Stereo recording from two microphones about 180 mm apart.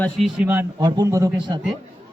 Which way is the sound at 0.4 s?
15° right (ahead or behind).